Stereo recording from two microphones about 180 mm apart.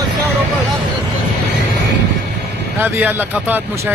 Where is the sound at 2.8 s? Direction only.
10° right (ahead or behind).